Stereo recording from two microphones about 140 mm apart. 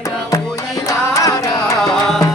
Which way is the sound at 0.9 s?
25° left (ahead or behind).